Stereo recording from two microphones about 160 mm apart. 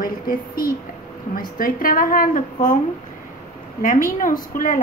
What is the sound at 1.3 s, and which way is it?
A woman's voice, 65° left (ahead or behind).